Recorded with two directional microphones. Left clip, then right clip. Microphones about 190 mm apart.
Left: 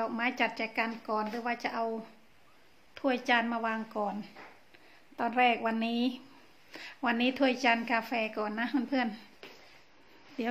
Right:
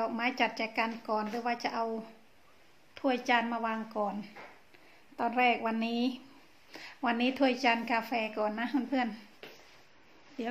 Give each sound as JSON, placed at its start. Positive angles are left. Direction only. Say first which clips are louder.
{"t": 0.0, "sound": "a woman's voice", "louder": "even", "side_deg": 5}
{"t": 2.9, "sound": "a woman's voice", "louder": "even", "side_deg": 10}
{"t": 10.4, "sound": "speech", "louder": "left 3 dB", "side_deg": 25}